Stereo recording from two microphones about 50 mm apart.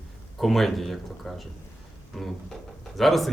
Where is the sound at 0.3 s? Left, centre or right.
Centre.